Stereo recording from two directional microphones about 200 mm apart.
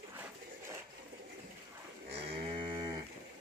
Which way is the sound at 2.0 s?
25° right (ahead or behind).